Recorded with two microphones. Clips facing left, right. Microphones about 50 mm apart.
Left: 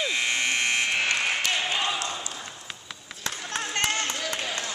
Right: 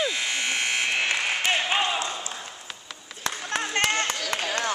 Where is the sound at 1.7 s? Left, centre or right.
Right.